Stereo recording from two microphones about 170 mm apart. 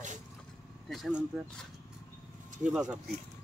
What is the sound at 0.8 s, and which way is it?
Speech, centre (ahead or behind).